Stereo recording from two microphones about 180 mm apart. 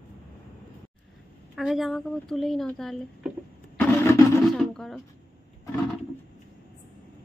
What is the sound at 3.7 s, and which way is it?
Vehicle, 15° left (ahead or behind).